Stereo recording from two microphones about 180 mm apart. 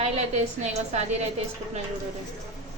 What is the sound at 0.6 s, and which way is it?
Speech, 40° right (ahead or behind).